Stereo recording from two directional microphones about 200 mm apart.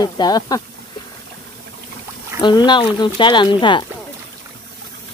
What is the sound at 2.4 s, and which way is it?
Speech, 20° left (ahead or behind).